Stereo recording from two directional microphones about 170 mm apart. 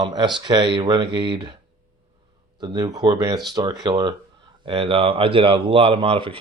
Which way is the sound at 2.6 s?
25° right (ahead or behind).